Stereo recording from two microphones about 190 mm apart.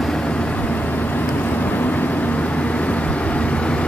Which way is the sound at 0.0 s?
5° left (ahead or behind).